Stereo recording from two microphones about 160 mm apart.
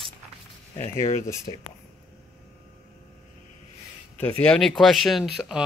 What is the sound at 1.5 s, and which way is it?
Speech, 35° left (ahead or behind).